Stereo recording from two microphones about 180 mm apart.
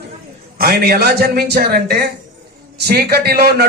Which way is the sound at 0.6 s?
60° right (ahead or behind).